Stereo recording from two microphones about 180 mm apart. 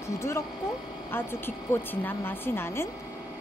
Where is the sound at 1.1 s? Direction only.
10° left (ahead or behind).